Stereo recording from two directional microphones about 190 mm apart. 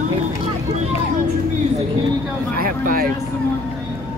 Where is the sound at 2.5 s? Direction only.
50° right (ahead or behind).